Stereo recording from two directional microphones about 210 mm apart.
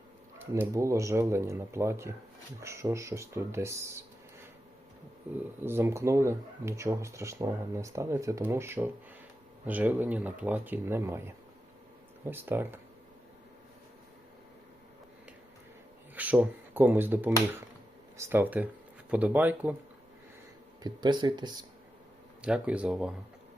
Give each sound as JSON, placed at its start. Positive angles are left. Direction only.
{"t": 0.5, "sound": "speech", "side_deg": -15}
{"t": 5.6, "sound": "speech", "side_deg": -10}
{"t": 16.1, "sound": "speech", "side_deg": -5}
{"t": 20.8, "sound": "speech", "side_deg": -20}
{"t": 22.4, "sound": "speech", "side_deg": -5}